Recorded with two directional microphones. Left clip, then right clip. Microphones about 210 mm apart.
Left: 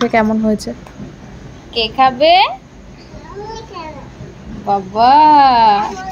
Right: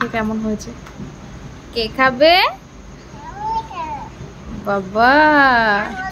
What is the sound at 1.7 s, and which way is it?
Speech, 5° right (ahead or behind).